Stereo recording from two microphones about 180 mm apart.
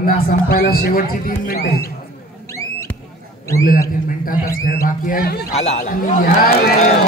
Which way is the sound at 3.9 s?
50° left (ahead or behind).